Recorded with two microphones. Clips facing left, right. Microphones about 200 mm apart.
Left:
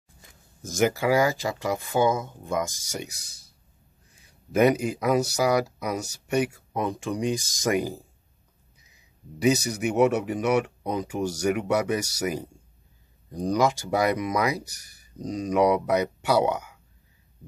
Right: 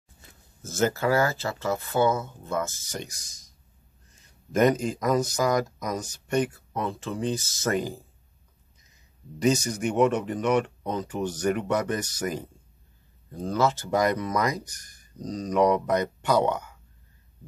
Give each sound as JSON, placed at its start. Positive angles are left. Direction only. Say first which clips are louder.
{"t": 0.6, "sound": "speech", "louder": "left 2 dB", "side_deg": 15}